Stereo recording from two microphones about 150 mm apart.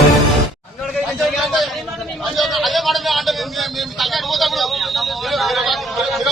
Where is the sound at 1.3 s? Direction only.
Centre (ahead or behind).